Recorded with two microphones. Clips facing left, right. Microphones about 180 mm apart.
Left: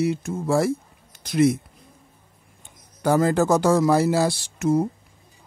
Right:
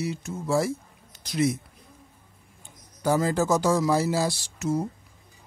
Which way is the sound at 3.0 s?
60° left (ahead or behind).